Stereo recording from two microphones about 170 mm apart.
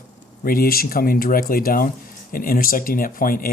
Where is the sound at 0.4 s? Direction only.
60° left (ahead or behind).